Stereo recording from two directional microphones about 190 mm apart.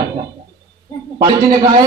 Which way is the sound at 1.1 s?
20° right (ahead or behind).